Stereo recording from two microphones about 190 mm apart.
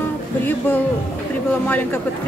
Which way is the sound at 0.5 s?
10° left (ahead or behind).